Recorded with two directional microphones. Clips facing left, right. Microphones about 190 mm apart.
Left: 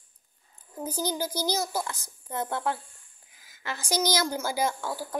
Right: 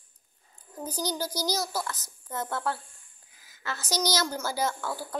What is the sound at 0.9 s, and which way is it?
A woman's voice, 10° left (ahead or behind).